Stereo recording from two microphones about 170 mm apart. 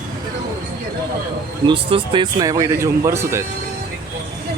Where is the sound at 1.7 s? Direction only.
30° right (ahead or behind); by 3.5 s 15° right (ahead or behind).